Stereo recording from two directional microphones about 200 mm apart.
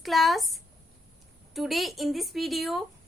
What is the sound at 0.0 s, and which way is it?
A woman's voice, centre (ahead or behind).